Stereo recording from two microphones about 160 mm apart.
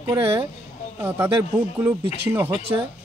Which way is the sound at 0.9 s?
15° right (ahead or behind).